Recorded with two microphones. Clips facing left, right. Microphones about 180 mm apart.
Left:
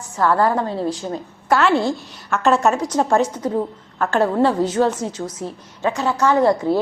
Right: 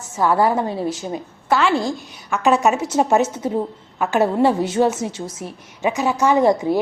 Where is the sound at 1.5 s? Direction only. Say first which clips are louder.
Left 1 dB; centre (ahead or behind).